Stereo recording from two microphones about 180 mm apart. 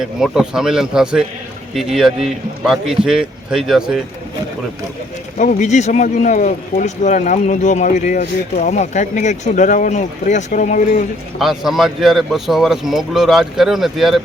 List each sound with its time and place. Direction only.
0.0 s speech: 5° right (ahead or behind)
5.4 s speech: 45° left (ahead or behind)
11.3 s speech: centre (ahead or behind)